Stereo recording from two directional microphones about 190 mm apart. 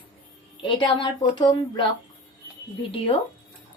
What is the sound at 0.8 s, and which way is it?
Speech, 25° left (ahead or behind).